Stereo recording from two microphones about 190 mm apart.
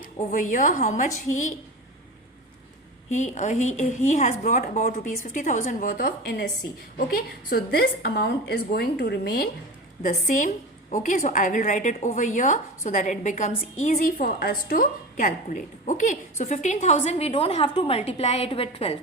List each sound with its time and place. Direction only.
0.2 s a woman's voice: 45° left (ahead or behind)
3.1 s a woman's voice: 40° left (ahead or behind); by 6.5 s 60° left (ahead or behind)
7.5 s a woman's voice: 55° left (ahead or behind)
10.0 s a woman's voice: 40° left (ahead or behind)
14.2 s a woman's voice: 55° left (ahead or behind); by 18.9 s 30° left (ahead or behind)